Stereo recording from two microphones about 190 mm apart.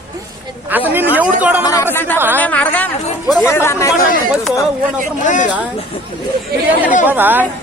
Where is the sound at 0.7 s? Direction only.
10° right (ahead or behind).